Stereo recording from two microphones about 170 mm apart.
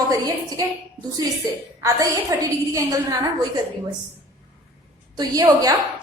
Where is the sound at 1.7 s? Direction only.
20° right (ahead or behind).